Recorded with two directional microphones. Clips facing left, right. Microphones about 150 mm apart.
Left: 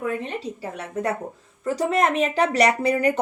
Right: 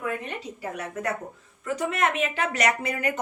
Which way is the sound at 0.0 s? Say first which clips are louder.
Left 4 dB; 30° left (ahead or behind).